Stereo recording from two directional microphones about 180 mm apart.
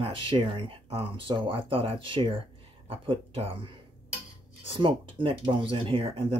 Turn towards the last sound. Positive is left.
turn(degrees=-30)  # may be behind; listen again after turning